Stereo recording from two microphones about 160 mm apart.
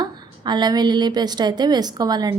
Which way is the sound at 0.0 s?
25° right (ahead or behind).